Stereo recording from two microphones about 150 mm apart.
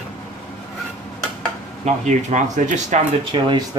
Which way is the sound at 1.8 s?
50° right (ahead or behind).